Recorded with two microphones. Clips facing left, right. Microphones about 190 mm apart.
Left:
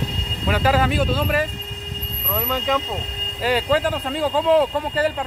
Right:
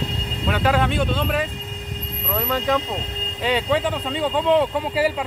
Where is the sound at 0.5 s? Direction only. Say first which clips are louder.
Left 1 dB; 5° left (ahead or behind).